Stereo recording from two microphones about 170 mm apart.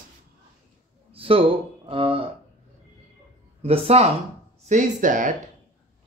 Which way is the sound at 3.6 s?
35° right (ahead or behind).